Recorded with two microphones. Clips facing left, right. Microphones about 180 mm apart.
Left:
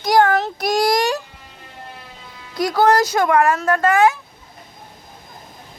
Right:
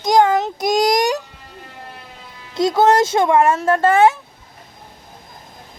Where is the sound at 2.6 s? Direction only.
25° right (ahead or behind).